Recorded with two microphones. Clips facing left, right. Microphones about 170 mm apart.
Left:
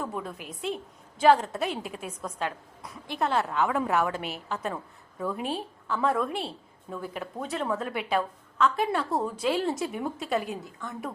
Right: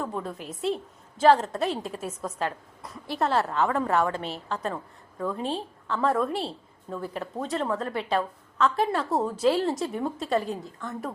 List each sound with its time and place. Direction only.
0.0 s a woman's voice: centre (ahead or behind)
4.1 s a woman's voice: 30° right (ahead or behind)
4.4 s a woman's voice: 5° left (ahead or behind)